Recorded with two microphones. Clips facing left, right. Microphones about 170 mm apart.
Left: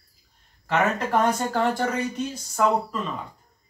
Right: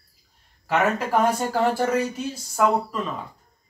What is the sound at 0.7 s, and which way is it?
Speech, 10° right (ahead or behind).